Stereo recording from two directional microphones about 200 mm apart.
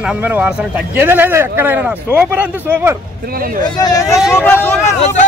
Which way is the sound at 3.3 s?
45° right (ahead or behind).